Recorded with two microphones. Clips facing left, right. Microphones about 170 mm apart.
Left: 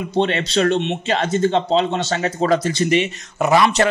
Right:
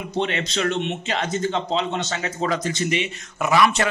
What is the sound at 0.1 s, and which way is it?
Speech, 35° left (ahead or behind).